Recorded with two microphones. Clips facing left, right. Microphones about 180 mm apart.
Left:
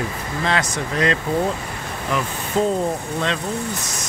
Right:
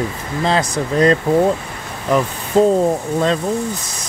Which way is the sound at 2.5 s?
40° right (ahead or behind).